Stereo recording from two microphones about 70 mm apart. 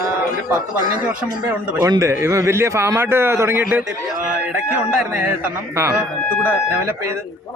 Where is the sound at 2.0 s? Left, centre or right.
Right.